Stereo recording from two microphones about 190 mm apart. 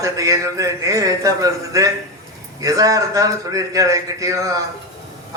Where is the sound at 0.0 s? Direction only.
15° right (ahead or behind).